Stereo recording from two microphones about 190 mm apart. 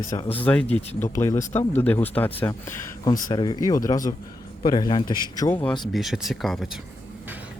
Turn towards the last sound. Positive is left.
turn(degrees=0)  # may be behind; listen again after turning